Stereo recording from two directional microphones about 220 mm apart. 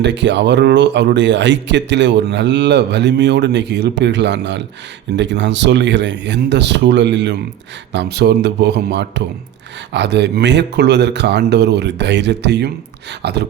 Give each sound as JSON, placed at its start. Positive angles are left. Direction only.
{"t": 0.0, "sound": "speech", "side_deg": -50}